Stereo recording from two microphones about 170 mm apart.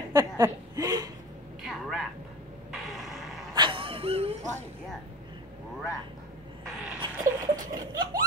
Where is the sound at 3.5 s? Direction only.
30° right (ahead or behind).